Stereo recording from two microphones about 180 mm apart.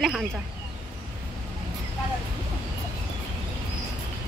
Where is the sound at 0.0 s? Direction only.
Centre (ahead or behind).